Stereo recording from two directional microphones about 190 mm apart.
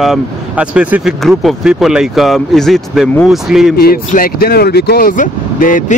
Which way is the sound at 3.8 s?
50° left (ahead or behind).